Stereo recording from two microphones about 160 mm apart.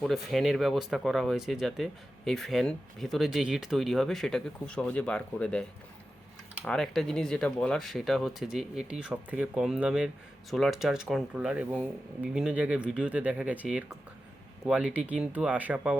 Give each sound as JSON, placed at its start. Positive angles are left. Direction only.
{"t": 0.0, "sound": "speech", "side_deg": 0}
{"t": 6.7, "sound": "speech", "side_deg": 0}